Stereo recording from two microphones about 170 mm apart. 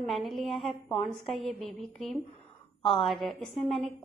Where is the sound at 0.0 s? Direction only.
Centre (ahead or behind).